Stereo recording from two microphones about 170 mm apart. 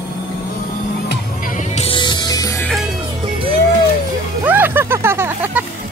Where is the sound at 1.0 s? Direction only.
55° left (ahead or behind); by 2.6 s 20° left (ahead or behind).